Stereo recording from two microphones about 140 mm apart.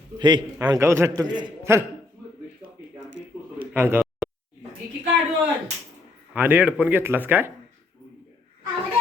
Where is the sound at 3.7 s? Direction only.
15° right (ahead or behind).